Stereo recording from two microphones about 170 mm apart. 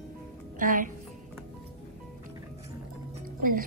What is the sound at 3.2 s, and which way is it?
Music, 55° right (ahead or behind).